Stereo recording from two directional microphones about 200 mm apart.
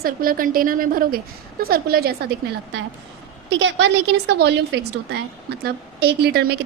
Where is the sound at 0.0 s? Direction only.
45° right (ahead or behind).